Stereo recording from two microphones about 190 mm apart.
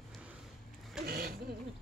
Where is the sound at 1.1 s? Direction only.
55° right (ahead or behind).